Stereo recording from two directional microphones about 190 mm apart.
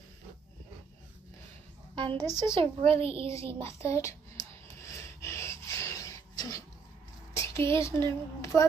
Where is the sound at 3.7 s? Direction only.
15° left (ahead or behind).